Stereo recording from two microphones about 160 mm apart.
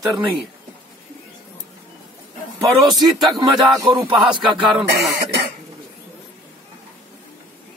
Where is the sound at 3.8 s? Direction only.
15° right (ahead or behind).